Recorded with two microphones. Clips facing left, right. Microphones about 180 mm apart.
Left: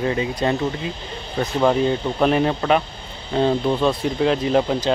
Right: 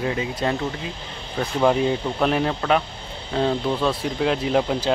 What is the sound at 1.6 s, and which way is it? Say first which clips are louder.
Speech: left 1 dB; 5° right (ahead or behind).